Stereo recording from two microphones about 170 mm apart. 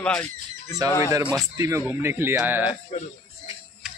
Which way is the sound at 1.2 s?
10° right (ahead or behind).